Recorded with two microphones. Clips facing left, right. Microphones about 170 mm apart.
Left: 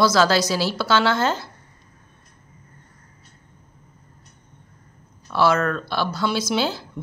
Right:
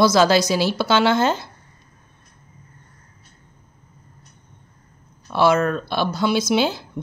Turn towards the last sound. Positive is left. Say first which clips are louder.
# right 3 dB
turn(degrees=-15)  # may be behind; listen again after turning